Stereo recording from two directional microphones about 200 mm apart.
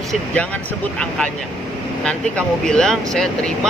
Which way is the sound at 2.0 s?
5° left (ahead or behind).